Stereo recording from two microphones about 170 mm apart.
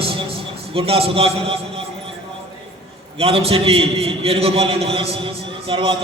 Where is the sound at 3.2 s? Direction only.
35° right (ahead or behind).